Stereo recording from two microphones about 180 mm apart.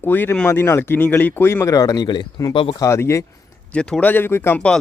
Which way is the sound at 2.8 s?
15° left (ahead or behind).